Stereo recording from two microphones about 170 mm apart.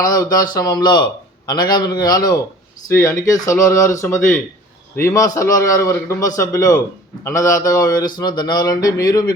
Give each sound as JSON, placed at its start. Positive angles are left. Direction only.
{"t": 0.0, "sound": "a man's voice", "side_deg": 20}